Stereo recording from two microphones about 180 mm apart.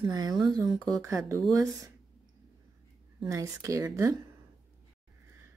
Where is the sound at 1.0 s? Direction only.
15° right (ahead or behind).